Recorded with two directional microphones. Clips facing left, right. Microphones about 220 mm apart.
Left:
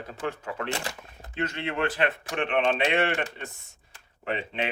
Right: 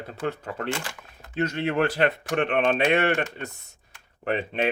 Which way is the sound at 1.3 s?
40° right (ahead or behind).